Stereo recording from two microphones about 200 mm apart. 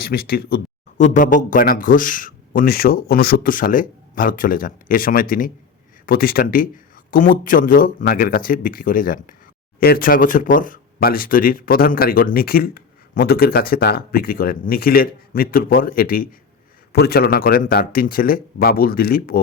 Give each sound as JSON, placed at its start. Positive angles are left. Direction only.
{"t": 0.0, "sound": "speech", "side_deg": 50}